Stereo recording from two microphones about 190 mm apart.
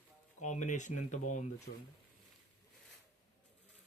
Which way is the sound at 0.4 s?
40° left (ahead or behind).